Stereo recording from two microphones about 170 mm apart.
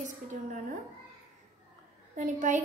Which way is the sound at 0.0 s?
45° right (ahead or behind).